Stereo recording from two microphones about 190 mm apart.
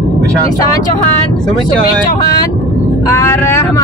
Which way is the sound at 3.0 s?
15° left (ahead or behind).